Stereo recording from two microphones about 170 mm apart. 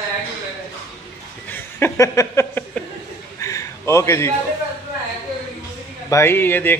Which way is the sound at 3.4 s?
20° left (ahead or behind).